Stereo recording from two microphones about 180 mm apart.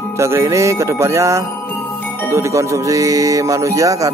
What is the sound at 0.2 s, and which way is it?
Music, 15° right (ahead or behind).